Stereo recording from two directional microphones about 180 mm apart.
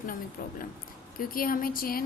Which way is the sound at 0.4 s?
55° left (ahead or behind).